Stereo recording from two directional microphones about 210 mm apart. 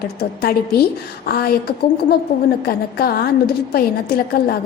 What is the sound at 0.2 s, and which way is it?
A woman's voice, 50° left (ahead or behind).